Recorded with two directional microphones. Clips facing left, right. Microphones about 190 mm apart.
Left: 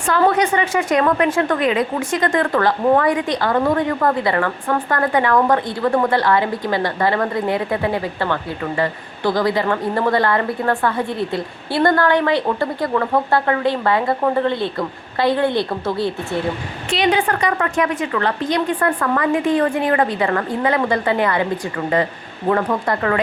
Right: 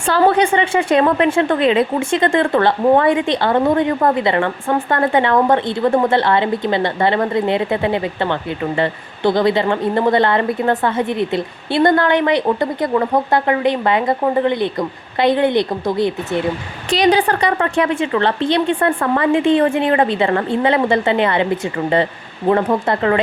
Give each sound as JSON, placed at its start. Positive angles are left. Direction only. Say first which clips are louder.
{"t": 0.0, "sound": "a woman's voice", "louder": "right 2 dB", "side_deg": -30}
{"t": 16.9, "sound": "a woman's voice", "louder": "right 4 dB", "side_deg": -35}